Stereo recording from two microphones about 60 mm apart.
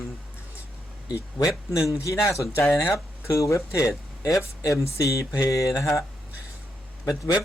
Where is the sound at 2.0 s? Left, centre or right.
Left.